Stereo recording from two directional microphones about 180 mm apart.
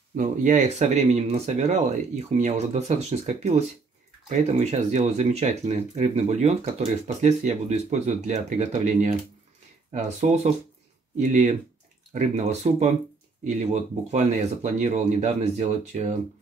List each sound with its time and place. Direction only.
0.1 s speech: 45° right (ahead or behind)